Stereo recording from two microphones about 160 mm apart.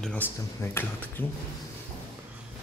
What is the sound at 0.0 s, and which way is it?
Speech, 10° left (ahead or behind).